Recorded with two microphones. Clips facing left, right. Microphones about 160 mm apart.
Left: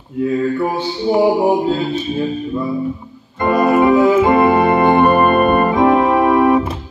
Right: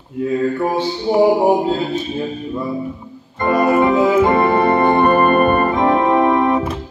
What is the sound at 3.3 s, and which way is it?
Organ, 10° left (ahead or behind).